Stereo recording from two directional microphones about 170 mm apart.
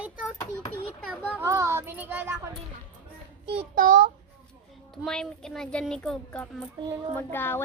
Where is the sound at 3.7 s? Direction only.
55° right (ahead or behind).